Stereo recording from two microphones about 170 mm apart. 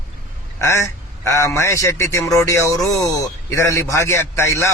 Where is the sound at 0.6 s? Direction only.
15° left (ahead or behind).